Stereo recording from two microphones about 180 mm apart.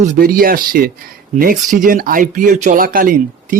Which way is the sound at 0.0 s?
45° right (ahead or behind).